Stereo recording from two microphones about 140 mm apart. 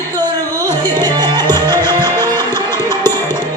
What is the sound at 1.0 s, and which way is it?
Music, 30° right (ahead or behind).